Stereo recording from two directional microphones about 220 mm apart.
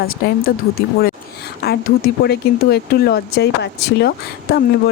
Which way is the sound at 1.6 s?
45° left (ahead or behind).